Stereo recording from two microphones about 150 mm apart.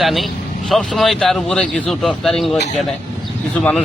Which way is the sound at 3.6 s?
5° left (ahead or behind).